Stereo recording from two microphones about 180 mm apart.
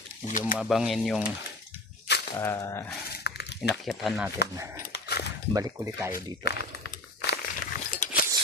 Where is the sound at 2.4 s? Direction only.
15° left (ahead or behind).